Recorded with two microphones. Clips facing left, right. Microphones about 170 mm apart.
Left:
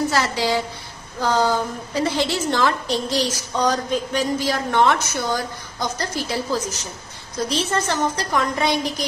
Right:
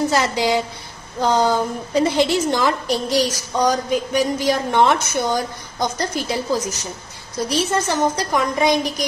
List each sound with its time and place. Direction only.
0.1 s a woman's voice: 15° right (ahead or behind)